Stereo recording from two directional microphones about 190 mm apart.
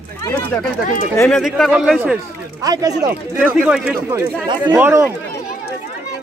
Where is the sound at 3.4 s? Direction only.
5° right (ahead or behind).